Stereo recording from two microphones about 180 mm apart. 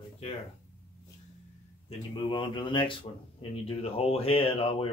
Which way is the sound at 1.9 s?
30° left (ahead or behind).